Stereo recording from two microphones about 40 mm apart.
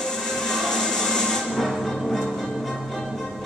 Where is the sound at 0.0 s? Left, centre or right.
Centre.